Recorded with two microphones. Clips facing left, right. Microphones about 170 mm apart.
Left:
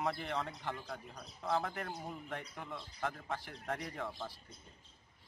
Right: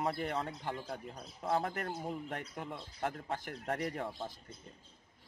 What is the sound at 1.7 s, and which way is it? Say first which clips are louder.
Speech: right 3 dB; 40° right (ahead or behind).